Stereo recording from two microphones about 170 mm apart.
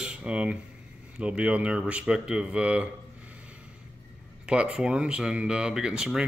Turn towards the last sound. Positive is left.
turn(degrees=-5)  # may be behind; listen again after turning